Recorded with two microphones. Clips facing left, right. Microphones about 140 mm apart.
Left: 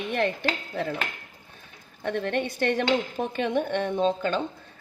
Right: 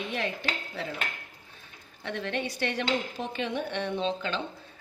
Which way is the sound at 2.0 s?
50° left (ahead or behind).